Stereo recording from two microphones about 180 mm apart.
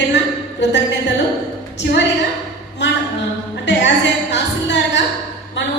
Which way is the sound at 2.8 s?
80° left.